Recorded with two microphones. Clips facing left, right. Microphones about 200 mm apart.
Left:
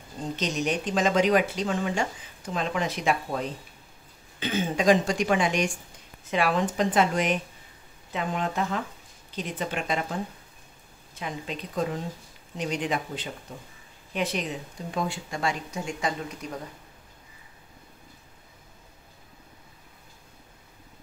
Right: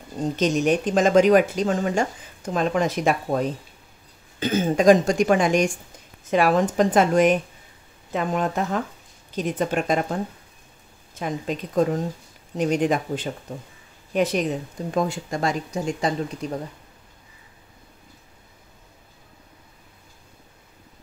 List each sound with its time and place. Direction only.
0.4 s speech: 50° right (ahead or behind)
11.1 s speech: 45° right (ahead or behind)